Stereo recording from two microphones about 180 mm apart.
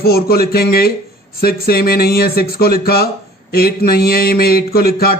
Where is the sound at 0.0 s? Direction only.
55° left (ahead or behind).